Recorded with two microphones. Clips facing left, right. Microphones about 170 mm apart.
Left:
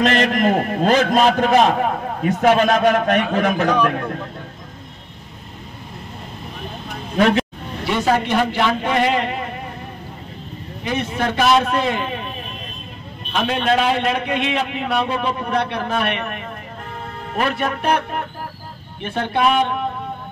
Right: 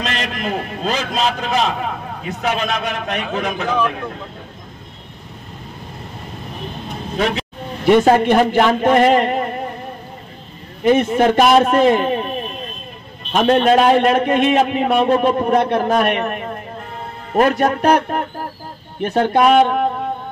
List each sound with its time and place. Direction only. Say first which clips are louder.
0.0 s a man's voice: left 7 dB; 50° left (ahead or behind)
7.2 s speech: left 4 dB; 50° left (ahead or behind)
7.8 s a man's voice: right 7 dB; 50° right (ahead or behind)
10.8 s a man's voice: right 9 dB; 50° right (ahead or behind)
13.3 s a man's voice: right 6 dB; 45° right (ahead or behind)